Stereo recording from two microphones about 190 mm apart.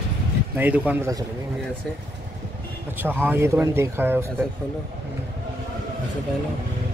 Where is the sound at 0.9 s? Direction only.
15° right (ahead or behind).